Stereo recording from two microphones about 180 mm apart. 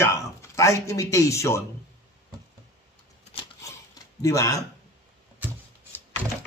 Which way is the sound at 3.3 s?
30° left (ahead or behind).